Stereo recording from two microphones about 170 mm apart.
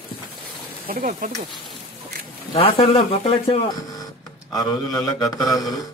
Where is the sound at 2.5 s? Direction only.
30° left (ahead or behind).